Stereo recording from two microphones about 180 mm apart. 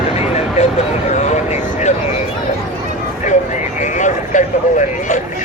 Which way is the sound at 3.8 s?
40° left (ahead or behind).